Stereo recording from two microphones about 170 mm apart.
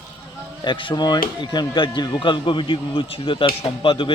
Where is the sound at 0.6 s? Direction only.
30° left (ahead or behind).